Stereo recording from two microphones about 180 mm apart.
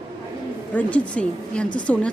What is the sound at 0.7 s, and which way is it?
A woman's voice, 5° left (ahead or behind).